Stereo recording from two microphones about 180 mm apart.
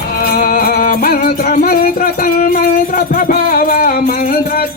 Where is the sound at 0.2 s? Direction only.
55° left (ahead or behind).